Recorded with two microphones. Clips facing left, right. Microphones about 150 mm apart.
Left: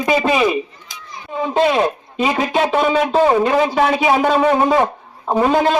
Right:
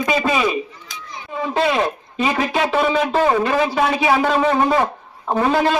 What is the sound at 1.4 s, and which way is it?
A man's voice, 20° left (ahead or behind).